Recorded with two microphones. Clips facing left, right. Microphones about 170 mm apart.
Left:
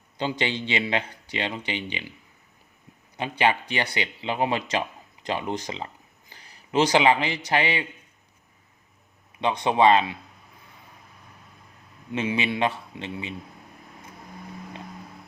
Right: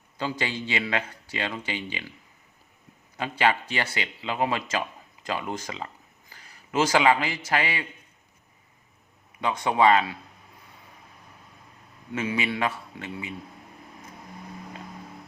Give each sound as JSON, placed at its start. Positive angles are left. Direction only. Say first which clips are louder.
{"t": 0.2, "sound": "speech", "louder": "left 3 dB", "side_deg": 25}
{"t": 3.2, "sound": "speech", "louder": "left 1 dB", "side_deg": 25}
{"t": 9.4, "sound": "speech", "louder": "left 2 dB", "side_deg": 25}
{"t": 12.1, "sound": "speech", "louder": "left 2 dB", "side_deg": 25}